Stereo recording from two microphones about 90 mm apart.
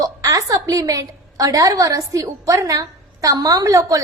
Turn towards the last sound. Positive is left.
turn(degrees=-40)  # may be behind; listen again after turning